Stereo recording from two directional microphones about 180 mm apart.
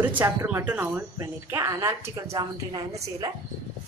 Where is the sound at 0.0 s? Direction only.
10° right (ahead or behind).